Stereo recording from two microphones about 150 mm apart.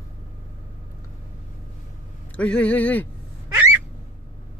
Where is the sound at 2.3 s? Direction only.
10° left (ahead or behind).